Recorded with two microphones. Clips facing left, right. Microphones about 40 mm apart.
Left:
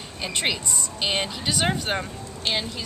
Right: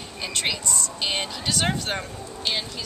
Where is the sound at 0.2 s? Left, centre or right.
Centre.